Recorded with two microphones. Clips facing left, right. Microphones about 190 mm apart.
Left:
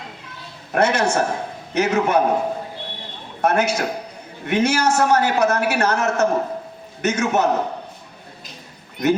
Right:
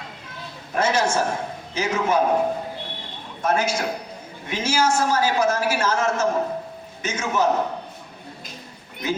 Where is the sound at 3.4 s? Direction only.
65° left (ahead or behind).